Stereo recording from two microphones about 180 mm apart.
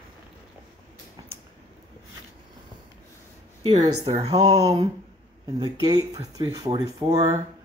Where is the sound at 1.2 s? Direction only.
20° right (ahead or behind).